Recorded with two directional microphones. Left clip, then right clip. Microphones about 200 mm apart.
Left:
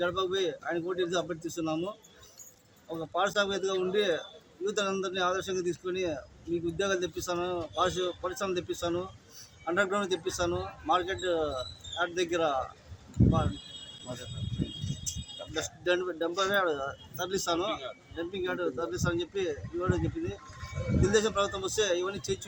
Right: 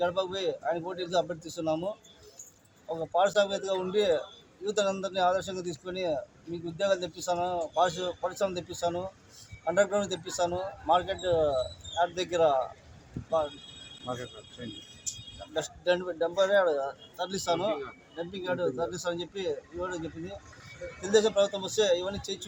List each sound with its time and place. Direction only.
0.0 s speech: centre (ahead or behind)
2.9 s speech: centre (ahead or behind)
14.1 s speech: 35° right (ahead or behind)
15.5 s speech: 5° left (ahead or behind)
21.1 s speech: centre (ahead or behind)